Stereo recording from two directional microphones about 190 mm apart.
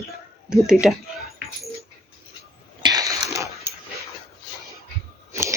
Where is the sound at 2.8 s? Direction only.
20° right (ahead or behind).